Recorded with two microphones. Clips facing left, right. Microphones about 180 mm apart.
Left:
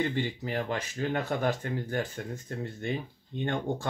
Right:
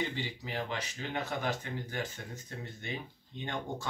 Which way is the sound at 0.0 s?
55° left (ahead or behind).